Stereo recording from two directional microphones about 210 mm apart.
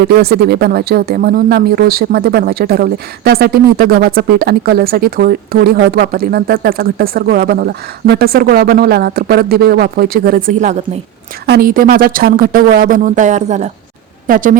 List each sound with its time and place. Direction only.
0.0 s speech: 45° right (ahead or behind)
11.4 s speech: 45° right (ahead or behind)